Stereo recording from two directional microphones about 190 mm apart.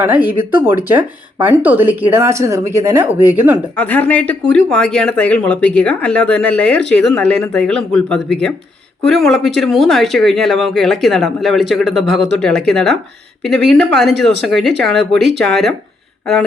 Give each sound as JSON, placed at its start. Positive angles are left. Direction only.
{"t": 0.0, "sound": "speech", "side_deg": -10}
{"t": 3.8, "sound": "speech", "side_deg": 10}
{"t": 12.1, "sound": "speech", "side_deg": -70}
{"t": 12.4, "sound": "speech", "side_deg": 5}
{"t": 15.4, "sound": "speech", "side_deg": 0}